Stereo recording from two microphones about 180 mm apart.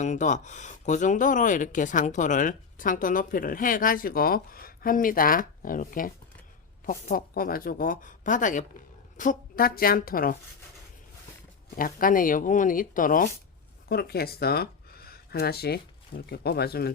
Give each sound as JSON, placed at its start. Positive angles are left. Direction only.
{"t": 0.0, "sound": "speech", "side_deg": 40}
{"t": 11.8, "sound": "speech", "side_deg": 50}
{"t": 13.8, "sound": "speech", "side_deg": 60}